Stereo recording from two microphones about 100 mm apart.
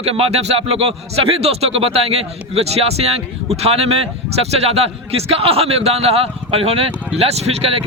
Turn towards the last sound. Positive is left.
turn(degrees=-90)